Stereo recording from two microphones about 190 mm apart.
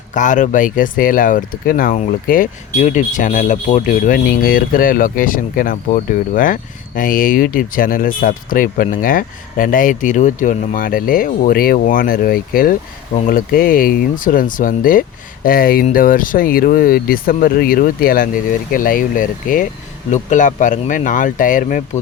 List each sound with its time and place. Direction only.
0.1 s speech: 40° left (ahead or behind)